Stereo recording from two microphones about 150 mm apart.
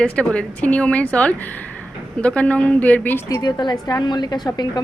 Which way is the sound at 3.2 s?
25° left (ahead or behind).